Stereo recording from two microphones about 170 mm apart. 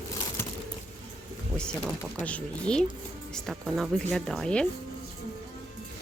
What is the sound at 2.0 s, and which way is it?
A woman's voice, 10° left (ahead or behind).